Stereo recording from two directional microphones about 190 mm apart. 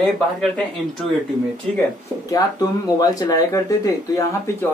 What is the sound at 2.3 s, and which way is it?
Speech, 20° left (ahead or behind).